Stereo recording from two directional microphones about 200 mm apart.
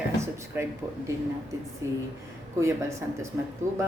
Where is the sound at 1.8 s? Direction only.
15° right (ahead or behind).